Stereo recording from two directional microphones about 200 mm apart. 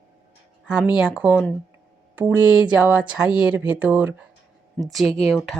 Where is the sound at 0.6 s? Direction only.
5° right (ahead or behind).